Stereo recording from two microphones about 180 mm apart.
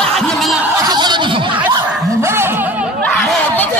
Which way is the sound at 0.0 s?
Centre (ahead or behind).